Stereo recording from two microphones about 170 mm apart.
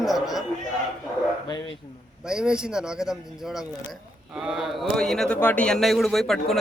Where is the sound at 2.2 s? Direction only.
5° right (ahead or behind).